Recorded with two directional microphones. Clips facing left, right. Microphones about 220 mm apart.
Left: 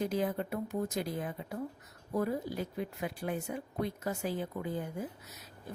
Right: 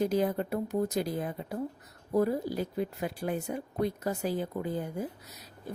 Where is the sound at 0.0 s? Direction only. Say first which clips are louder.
Right 5 dB; 40° right (ahead or behind).